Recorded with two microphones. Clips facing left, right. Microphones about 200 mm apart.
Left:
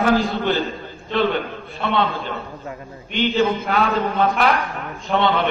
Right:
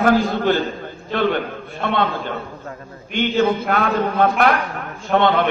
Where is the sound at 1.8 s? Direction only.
50° right (ahead or behind).